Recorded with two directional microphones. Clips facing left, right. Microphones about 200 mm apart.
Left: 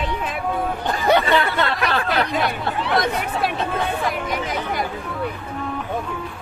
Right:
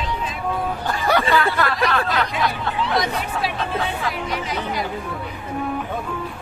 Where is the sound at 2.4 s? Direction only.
60° left (ahead or behind).